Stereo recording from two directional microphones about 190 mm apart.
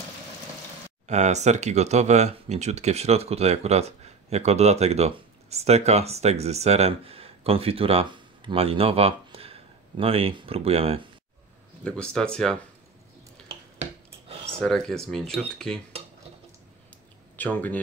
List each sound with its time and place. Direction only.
1.0 s speech: 35° right (ahead or behind)
11.8 s speech: 5° left (ahead or behind)
14.3 s a sound: 30° right (ahead or behind)
14.6 s speech: 5° left (ahead or behind)
17.4 s speech: 10° left (ahead or behind)